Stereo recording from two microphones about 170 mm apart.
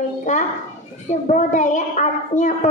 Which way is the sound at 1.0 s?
45° left (ahead or behind).